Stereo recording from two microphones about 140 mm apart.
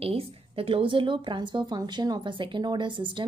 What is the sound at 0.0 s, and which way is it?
A woman's voice, 45° right (ahead or behind).